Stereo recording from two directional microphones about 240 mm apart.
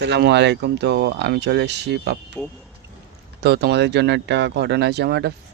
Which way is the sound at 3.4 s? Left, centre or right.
Right.